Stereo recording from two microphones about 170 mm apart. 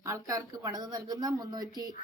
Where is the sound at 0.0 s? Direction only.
20° right (ahead or behind).